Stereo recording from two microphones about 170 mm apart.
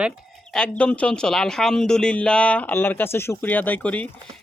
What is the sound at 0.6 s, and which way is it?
Speech, 5° left (ahead or behind).